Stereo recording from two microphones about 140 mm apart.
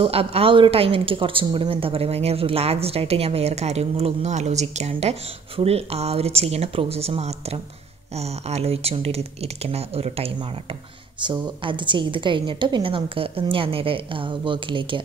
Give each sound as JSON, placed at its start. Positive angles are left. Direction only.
{"t": 0.0, "sound": "a woman's voice", "side_deg": -45}
{"t": 11.1, "sound": "a woman's voice", "side_deg": -35}